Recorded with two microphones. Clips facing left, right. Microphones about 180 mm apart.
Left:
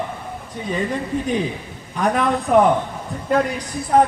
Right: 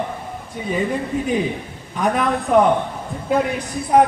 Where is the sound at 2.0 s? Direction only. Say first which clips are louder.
Even; centre (ahead or behind).